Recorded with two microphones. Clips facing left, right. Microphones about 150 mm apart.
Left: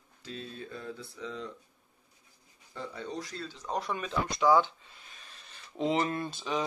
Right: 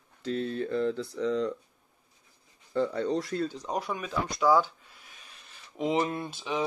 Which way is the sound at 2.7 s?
70° right (ahead or behind).